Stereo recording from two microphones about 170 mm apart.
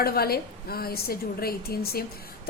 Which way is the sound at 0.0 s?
65° left (ahead or behind).